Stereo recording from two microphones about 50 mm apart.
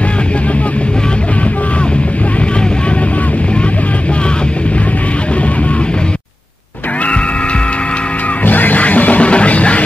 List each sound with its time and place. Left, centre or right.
8.5 s music: left